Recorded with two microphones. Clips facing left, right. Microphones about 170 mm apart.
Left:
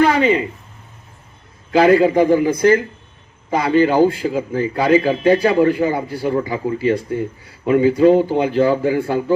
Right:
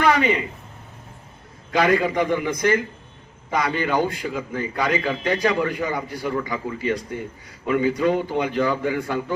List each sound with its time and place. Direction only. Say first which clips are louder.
0.0 s a sound: left 5 dB; 30° left (ahead or behind)
1.7 s a man's voice: left 7 dB; 30° left (ahead or behind)
5.3 s a man's voice: left 8 dB; 30° left (ahead or behind)